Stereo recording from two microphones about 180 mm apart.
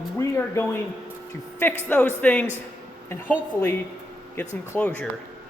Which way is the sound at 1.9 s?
10° left (ahead or behind).